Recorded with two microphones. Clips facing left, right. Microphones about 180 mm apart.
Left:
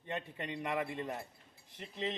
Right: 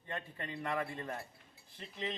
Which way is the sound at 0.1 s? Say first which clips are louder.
Left 3 dB; 20° left (ahead or behind).